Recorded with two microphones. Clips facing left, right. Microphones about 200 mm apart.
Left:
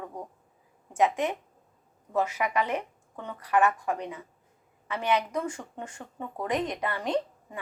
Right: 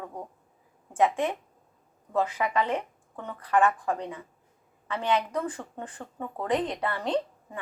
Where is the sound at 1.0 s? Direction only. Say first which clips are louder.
Right 1 dB; 20° left (ahead or behind).